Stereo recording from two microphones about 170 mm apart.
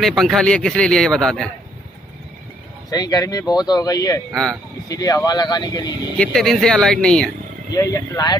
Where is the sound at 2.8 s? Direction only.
20° left (ahead or behind).